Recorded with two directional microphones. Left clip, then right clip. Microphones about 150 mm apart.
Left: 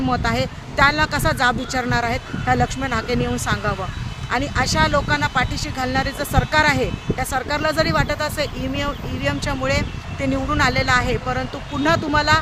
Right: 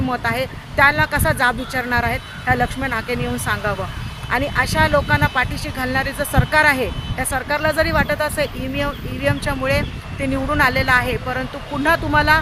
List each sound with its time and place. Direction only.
0.1 s speech: 20° left (ahead or behind)